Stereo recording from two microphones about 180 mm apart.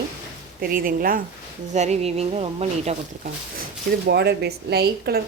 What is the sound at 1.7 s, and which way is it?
Speech, 40° right (ahead or behind).